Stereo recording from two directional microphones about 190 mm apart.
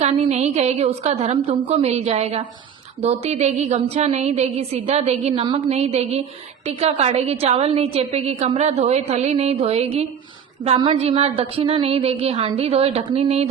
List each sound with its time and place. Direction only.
0.0 s a woman's voice: 35° right (ahead or behind)